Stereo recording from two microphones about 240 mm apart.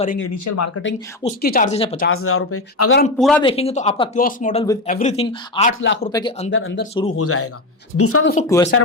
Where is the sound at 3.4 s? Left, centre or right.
Left.